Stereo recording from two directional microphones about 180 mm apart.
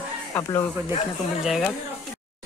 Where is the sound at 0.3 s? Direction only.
15° left (ahead or behind).